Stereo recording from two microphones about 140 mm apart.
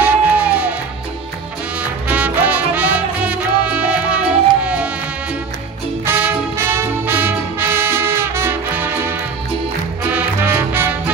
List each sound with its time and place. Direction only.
0.0 s music: 10° right (ahead or behind)
1.8 s music: 10° right (ahead or behind)
6.0 s brass instrument: 15° right (ahead or behind)
10.1 s music: 15° right (ahead or behind)